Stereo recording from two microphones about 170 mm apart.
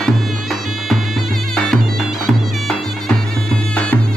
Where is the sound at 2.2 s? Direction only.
Centre (ahead or behind).